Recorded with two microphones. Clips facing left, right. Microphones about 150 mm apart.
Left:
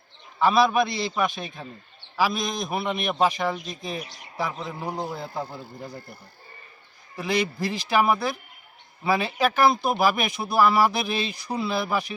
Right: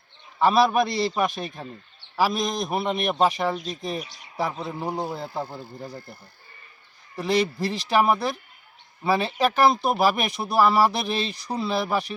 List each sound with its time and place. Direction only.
0.5 s a man's voice: 40° right (ahead or behind)
3.1 s speech: 5° right (ahead or behind)
4.4 s a man's voice: 35° right (ahead or behind)
4.9 s a man's voice: 15° right (ahead or behind)
5.1 s speech: centre (ahead or behind)
7.2 s speech: 5° left (ahead or behind)
11.8 s a man's voice: 35° right (ahead or behind)